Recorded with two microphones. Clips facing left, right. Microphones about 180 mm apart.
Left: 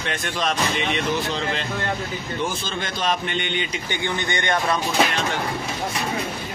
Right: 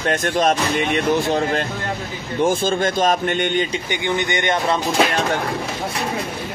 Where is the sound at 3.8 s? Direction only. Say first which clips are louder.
Right 4 dB; 15° right (ahead or behind).